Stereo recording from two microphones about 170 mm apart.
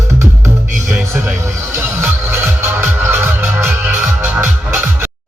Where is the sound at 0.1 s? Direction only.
15° right (ahead or behind).